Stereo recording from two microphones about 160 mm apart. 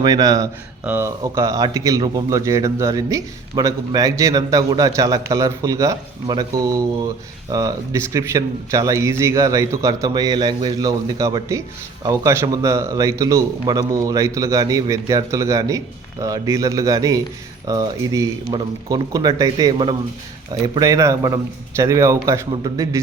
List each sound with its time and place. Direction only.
0.0 s a man's voice: 25° right (ahead or behind)